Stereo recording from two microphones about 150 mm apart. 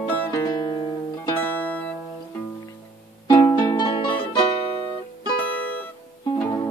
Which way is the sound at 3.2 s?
30° left (ahead or behind).